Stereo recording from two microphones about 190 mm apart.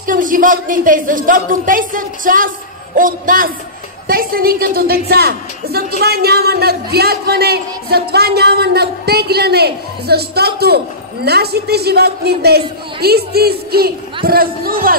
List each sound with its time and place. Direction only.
0.0 s a woman's voice: 45° right (ahead or behind)